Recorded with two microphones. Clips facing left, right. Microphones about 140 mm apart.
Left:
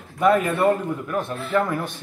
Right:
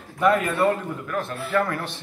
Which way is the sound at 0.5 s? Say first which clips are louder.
Left 2 dB; 20° left (ahead or behind).